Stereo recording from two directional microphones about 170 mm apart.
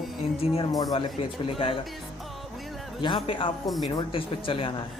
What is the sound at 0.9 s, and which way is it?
Speech, 30° left (ahead or behind).